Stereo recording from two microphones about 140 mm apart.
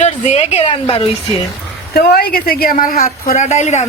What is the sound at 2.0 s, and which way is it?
Speech, 90° left.